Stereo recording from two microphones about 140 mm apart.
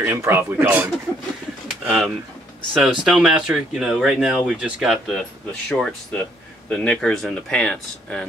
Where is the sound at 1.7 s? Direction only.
5° right (ahead or behind).